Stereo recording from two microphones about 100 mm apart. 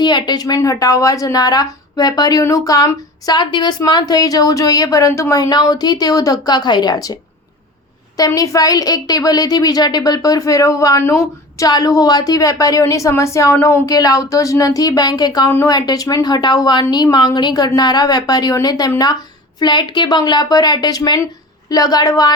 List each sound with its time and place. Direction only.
0.0 s a woman's voice: 45° left (ahead or behind)
8.4 s a woman's voice: 35° left (ahead or behind)
13.8 s a woman's voice: 40° left (ahead or behind)